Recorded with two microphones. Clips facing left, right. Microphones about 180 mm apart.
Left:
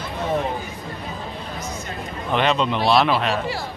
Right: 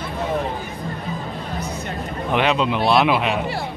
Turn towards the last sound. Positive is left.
turn(degrees=-10)  # may be behind; listen again after turning